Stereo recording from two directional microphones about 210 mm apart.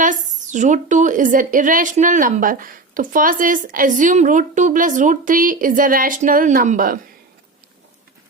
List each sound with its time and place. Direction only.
0.0 s speech: 35° right (ahead or behind)